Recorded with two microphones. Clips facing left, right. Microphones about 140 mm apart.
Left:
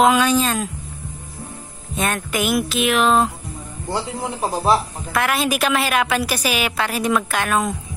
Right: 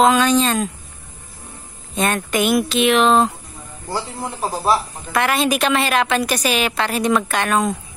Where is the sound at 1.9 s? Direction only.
5° left (ahead or behind).